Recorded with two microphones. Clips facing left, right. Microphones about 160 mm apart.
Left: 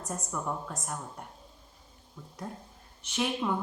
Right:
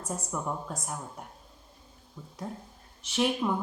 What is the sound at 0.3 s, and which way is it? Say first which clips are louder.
Speech: even; 15° right (ahead or behind).